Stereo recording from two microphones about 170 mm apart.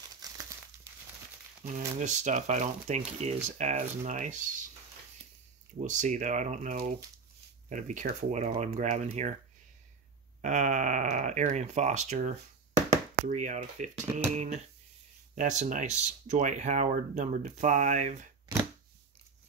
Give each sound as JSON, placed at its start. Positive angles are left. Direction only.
{"t": 0.2, "sound": "crumpling", "side_deg": -20}
{"t": 2.0, "sound": "speech", "side_deg": -45}
{"t": 5.8, "sound": "speech", "side_deg": -45}
{"t": 10.4, "sound": "speech", "side_deg": -45}
{"t": 14.3, "sound": "a sound", "side_deg": -40}
{"t": 15.3, "sound": "speech", "side_deg": -45}